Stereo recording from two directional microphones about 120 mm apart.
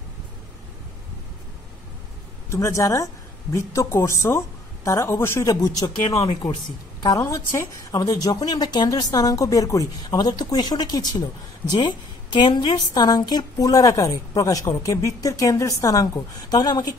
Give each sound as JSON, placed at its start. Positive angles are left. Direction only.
{"t": 2.5, "sound": "a woman's voice", "side_deg": 25}
{"t": 6.0, "sound": "speech", "side_deg": 45}
{"t": 7.0, "sound": "a woman's voice", "side_deg": 30}